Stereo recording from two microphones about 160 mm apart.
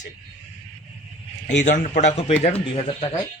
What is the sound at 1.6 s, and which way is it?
Speech, 50° left (ahead or behind).